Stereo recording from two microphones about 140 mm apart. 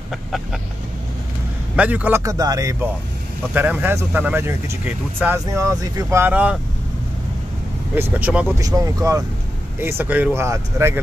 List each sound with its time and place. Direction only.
0.1 s vehicle: centre (ahead or behind)
1.8 s speech: 10° right (ahead or behind)
3.5 s speech: 15° right (ahead or behind)
7.9 s speech: 15° right (ahead or behind)
8.5 s speech: 25° right (ahead or behind)